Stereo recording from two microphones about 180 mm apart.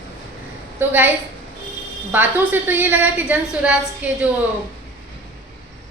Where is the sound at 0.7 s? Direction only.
10° right (ahead or behind).